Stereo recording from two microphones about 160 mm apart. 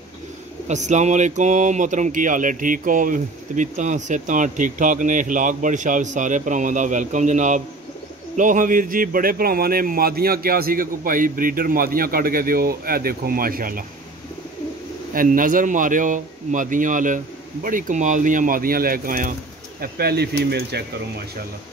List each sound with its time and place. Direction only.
0.7 s a man's voice: 45° right (ahead or behind); by 13.8 s 65° right (ahead or behind)
15.1 s a man's voice: 55° right (ahead or behind)
19.8 s speech: 80° right